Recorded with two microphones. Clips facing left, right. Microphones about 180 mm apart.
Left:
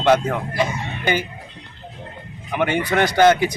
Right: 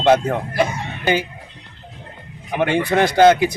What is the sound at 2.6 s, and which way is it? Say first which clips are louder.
Speech: right 2 dB; 30° right (ahead or behind).